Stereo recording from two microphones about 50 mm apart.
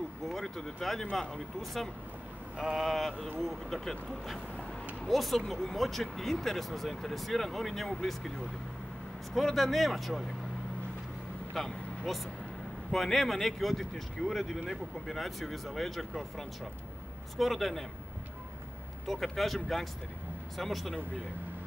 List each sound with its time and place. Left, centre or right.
0.3 s speech: centre
9.3 s speech: centre
11.5 s vehicle: centre
12.9 s speech: centre
19.0 s speech: centre